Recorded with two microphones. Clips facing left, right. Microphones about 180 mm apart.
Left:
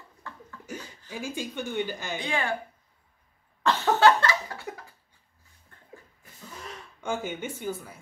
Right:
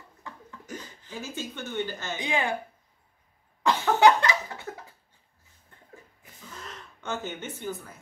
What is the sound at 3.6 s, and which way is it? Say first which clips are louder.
Cough: even; 15° right (ahead or behind).